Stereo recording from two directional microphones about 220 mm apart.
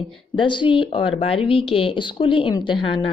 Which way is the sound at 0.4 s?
20° left (ahead or behind).